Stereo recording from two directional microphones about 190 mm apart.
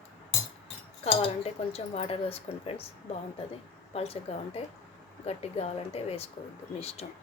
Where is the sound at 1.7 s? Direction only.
30° left (ahead or behind).